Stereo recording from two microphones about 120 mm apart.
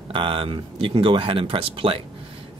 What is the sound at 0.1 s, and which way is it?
Speech, 45° right (ahead or behind).